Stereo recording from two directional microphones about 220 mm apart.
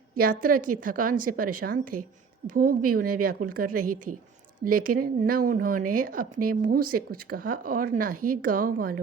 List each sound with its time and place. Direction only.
0.2 s speech: 40° right (ahead or behind)